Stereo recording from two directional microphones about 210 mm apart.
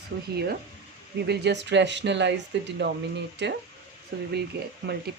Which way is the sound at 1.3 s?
55° right (ahead or behind).